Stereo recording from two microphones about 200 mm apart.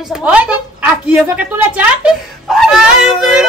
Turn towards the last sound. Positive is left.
turn(degrees=-5)  # may be behind; listen again after turning